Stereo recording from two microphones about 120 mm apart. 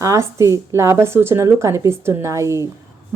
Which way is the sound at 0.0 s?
25° right (ahead or behind).